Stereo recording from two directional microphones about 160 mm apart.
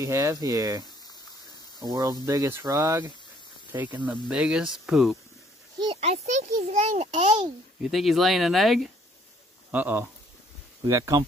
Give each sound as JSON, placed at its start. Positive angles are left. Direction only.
{"t": 0.0, "sound": "speech", "side_deg": -20}
{"t": 5.8, "sound": "a child's voice", "side_deg": -35}
{"t": 7.8, "sound": "speech", "side_deg": 0}
{"t": 10.9, "sound": "speech", "side_deg": -20}